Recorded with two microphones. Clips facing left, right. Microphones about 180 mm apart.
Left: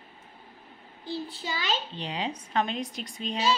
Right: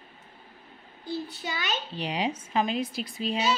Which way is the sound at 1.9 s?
10° right (ahead or behind).